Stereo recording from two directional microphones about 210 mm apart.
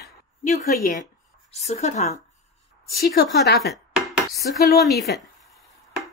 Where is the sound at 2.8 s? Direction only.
45° left (ahead or behind).